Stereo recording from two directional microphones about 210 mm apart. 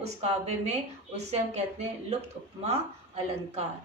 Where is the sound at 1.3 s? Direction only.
30° right (ahead or behind).